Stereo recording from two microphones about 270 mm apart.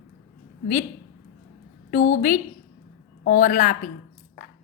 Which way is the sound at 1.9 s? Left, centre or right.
Left.